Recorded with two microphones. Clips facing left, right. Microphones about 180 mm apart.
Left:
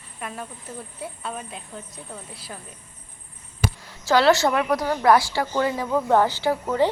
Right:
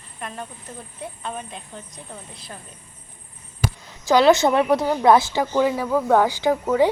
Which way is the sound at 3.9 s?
20° right (ahead or behind).